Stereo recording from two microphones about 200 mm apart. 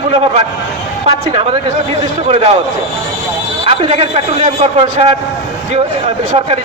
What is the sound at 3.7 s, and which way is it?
A man's voice, 30° right (ahead or behind).